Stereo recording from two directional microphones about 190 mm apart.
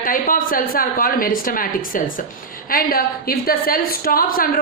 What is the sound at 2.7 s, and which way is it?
A woman's voice, 50° left (ahead or behind).